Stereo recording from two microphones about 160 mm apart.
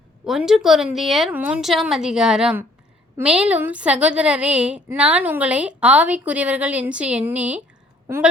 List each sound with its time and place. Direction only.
0.3 s a woman's voice: 5° right (ahead or behind)